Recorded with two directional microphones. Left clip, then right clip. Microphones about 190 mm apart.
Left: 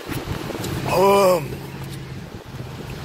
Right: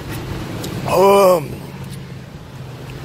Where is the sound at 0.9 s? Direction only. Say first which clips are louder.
Right 4 dB; 30° right (ahead or behind).